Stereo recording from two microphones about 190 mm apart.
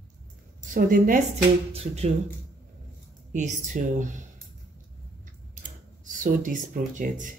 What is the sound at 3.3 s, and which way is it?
Speech, 40° right (ahead or behind).